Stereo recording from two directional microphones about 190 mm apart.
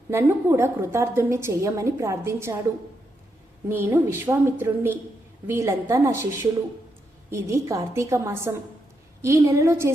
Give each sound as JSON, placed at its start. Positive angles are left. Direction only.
{"t": 0.1, "sound": "a woman's voice", "side_deg": -10}
{"t": 3.7, "sound": "a woman's voice", "side_deg": -10}